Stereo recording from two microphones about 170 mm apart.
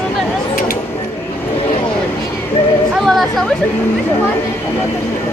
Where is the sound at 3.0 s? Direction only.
Centre (ahead or behind).